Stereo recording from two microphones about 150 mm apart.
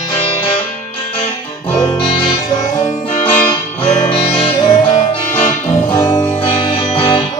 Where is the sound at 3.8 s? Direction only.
40° left (ahead or behind).